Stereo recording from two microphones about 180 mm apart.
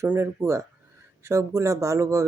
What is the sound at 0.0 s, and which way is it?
Speech, 15° right (ahead or behind).